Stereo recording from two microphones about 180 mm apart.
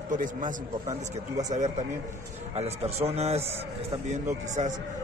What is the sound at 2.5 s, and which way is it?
A man's voice, 35° right (ahead or behind).